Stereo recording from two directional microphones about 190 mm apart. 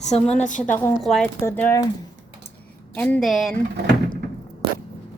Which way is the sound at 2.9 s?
5° left (ahead or behind).